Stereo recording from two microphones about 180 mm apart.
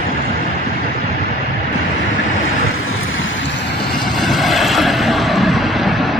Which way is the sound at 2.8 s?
90° left.